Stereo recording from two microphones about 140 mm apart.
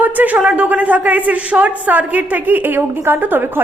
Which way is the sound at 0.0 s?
10° right (ahead or behind).